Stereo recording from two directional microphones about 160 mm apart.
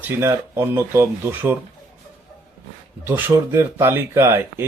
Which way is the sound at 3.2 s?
15° right (ahead or behind).